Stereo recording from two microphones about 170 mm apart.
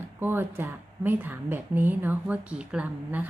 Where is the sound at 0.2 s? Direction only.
10° right (ahead or behind).